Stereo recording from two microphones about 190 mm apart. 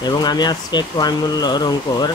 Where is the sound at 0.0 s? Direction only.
20° left (ahead or behind).